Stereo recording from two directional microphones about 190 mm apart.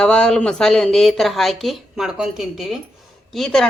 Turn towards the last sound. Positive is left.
turn(degrees=0)  # may be behind; listen again after turning